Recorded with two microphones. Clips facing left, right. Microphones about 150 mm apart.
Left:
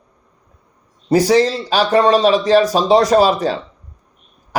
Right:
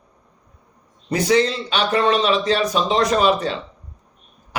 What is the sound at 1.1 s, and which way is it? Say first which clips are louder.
A man's voice: left 5 dB; 35° left (ahead or behind).